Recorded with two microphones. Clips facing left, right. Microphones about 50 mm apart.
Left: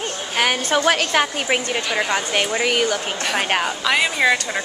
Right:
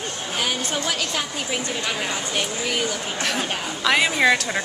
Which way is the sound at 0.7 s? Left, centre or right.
Left.